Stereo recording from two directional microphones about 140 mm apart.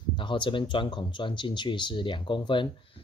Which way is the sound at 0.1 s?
35° left (ahead or behind).